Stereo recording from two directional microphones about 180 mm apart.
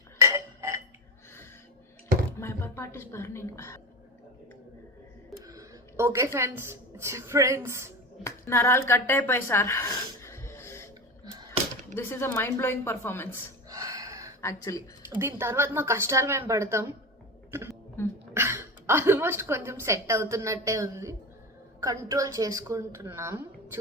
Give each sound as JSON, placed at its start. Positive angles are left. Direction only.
{"t": 0.2, "sound": "a sound", "side_deg": -15}
{"t": 2.4, "sound": "a woman's voice", "side_deg": 15}
{"t": 5.5, "sound": "a woman's voice", "side_deg": -15}
{"t": 8.2, "sound": "a woman's voice", "side_deg": 15}
{"t": 11.9, "sound": "a woman's voice", "side_deg": 15}
{"t": 13.7, "sound": "gasp", "side_deg": -20}
{"t": 14.4, "sound": "a woman's voice", "side_deg": 15}
{"t": 15.1, "sound": "a woman's voice", "side_deg": -10}
{"t": 18.0, "sound": "speech", "side_deg": 15}
{"t": 18.3, "sound": "a woman's voice", "side_deg": -15}